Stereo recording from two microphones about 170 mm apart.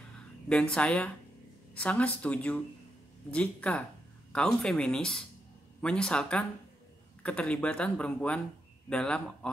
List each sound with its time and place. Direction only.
0.5 s speech: 5° left (ahead or behind)